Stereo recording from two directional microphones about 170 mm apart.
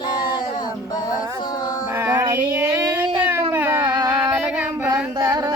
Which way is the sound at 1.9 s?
15° right (ahead or behind).